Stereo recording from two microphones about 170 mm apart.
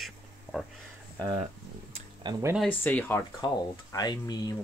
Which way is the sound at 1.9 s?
40° right (ahead or behind).